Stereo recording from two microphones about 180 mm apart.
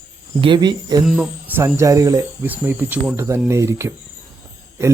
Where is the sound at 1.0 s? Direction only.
5° right (ahead or behind).